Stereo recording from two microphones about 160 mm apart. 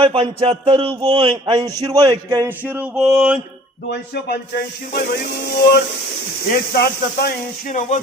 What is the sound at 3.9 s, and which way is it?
Speech, 90° left.